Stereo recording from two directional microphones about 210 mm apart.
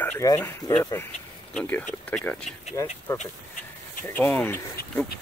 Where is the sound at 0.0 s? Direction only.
10° left (ahead or behind).